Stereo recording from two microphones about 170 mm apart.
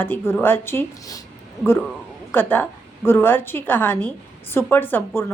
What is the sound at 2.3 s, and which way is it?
A woman's voice, 10° left (ahead or behind).